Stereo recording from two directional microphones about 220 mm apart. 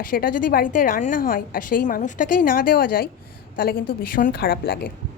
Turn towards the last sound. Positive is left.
turn(degrees=40)  # may be behind; listen again after turning